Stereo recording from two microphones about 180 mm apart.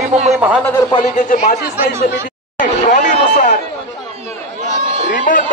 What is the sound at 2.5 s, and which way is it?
Chatter, 45° left (ahead or behind).